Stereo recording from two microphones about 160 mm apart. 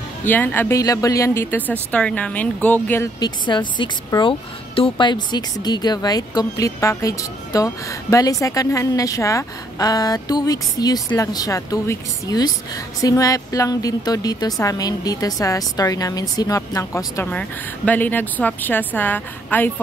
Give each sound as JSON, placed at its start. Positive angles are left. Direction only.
{"t": 0.3, "sound": "speech", "side_deg": 10}
{"t": 3.2, "sound": "a woman's voice", "side_deg": 25}